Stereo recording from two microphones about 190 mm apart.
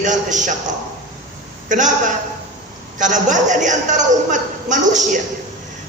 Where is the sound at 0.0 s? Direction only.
40° right (ahead or behind).